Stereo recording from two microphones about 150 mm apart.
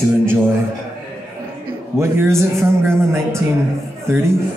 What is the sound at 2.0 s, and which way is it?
A man's voice, 20° right (ahead or behind).